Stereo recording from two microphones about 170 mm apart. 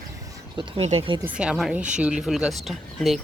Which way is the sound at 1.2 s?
5° right (ahead or behind).